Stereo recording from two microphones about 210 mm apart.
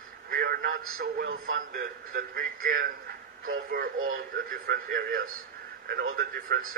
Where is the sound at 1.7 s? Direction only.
45° right (ahead or behind).